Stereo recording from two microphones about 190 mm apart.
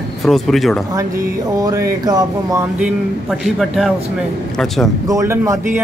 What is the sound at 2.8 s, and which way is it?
A man's voice, centre (ahead or behind).